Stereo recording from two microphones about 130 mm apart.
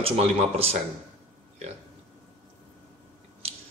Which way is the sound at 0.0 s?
50° right (ahead or behind).